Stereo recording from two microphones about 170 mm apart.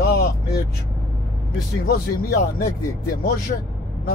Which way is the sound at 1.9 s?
65° left (ahead or behind).